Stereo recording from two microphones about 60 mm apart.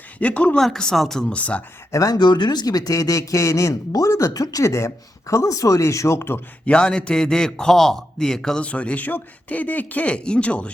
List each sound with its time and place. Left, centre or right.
0.2 s speech: left
0.6 s a man's voice: centre
1.3 s speech: left
1.9 s speech: left
6.7 s a man's voice: centre
8.6 s speech: left